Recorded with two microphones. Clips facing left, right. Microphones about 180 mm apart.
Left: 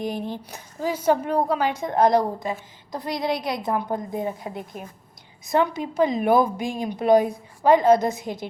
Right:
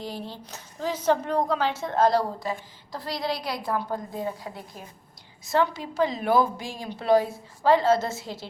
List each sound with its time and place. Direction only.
0.0 s a woman's voice: 15° left (ahead or behind)